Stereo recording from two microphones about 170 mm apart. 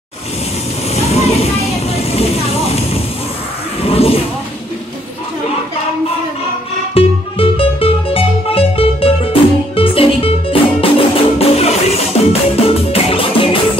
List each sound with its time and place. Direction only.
0.9 s vehicle: 40° left (ahead or behind)
3.8 s a sound: 35° left (ahead or behind)
6.9 s music: 35° left (ahead or behind)